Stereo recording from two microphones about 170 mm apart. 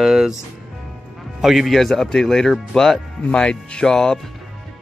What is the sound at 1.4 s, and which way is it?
Speech, centre (ahead or behind).